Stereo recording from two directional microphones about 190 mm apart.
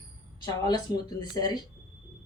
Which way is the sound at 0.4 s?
20° left (ahead or behind).